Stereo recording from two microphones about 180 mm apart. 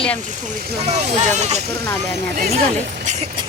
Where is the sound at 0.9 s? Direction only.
40° right (ahead or behind).